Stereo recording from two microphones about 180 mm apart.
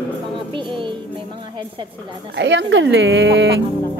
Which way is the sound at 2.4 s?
80° right.